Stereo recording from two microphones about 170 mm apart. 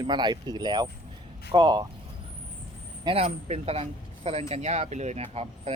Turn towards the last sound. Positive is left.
turn(degrees=-40)  # may be behind; listen again after turning